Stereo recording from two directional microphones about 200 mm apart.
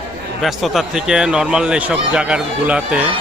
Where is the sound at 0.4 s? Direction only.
Centre (ahead or behind).